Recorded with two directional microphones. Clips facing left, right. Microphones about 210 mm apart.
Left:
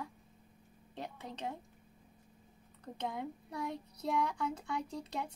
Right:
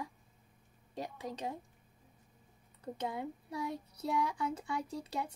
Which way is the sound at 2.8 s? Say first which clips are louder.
Right 1 dB; 5° right (ahead or behind).